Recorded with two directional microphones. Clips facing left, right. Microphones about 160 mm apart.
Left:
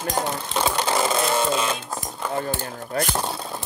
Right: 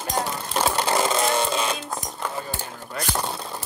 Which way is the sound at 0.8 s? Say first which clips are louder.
Even; 5° left (ahead or behind).